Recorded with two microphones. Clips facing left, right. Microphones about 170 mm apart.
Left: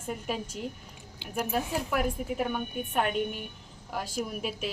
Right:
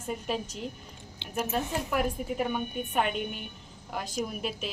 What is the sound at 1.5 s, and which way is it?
A woman's voice, 5° left (ahead or behind).